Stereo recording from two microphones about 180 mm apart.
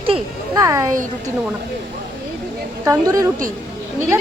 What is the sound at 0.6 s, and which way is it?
Speech, 15° right (ahead or behind).